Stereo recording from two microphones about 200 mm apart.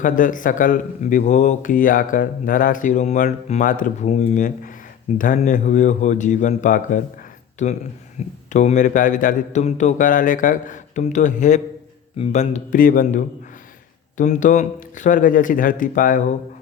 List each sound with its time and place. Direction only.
0.0 s speech: 40° left (ahead or behind)